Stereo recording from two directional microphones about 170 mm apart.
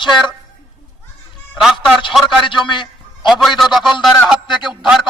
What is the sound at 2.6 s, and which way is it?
Speech, 30° left (ahead or behind).